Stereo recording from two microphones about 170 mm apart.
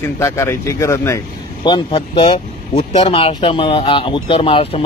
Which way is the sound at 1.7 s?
25° left (ahead or behind).